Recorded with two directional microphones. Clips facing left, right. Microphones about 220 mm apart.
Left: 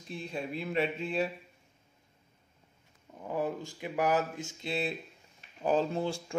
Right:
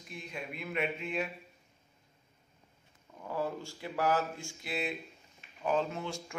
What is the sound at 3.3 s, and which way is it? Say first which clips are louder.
Speech: left 2 dB; 15° left (ahead or behind).